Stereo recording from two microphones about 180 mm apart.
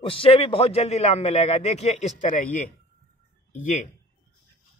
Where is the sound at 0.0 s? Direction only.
30° left (ahead or behind).